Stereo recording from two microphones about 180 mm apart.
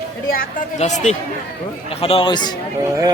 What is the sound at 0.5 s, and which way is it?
Speech, 40° left (ahead or behind).